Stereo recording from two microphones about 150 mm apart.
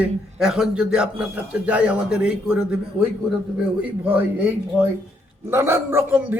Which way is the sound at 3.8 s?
10° right (ahead or behind).